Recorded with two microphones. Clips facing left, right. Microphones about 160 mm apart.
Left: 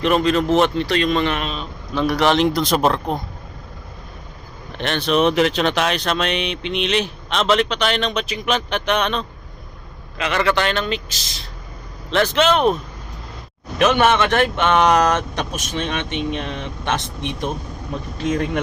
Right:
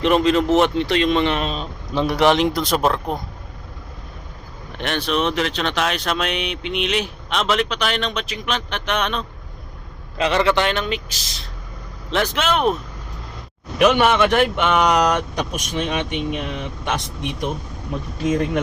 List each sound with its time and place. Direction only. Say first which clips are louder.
0.0 s speech: right 1 dB; 20° right (ahead or behind)
2.0 s mantra: even; 20° right (ahead or behind); by 3.2 s centre (ahead or behind)
4.8 s speech: left 2 dB; 10° right (ahead or behind)
5.1 s mantra: left 6 dB; 10° left (ahead or behind)
10.2 s speech: right 2 dB; 30° right (ahead or behind); by 12.7 s 5° right (ahead or behind)
13.7 s speech: even; 10° right (ahead or behind)
18.2 s mantra: right 1 dB; 5° right (ahead or behind)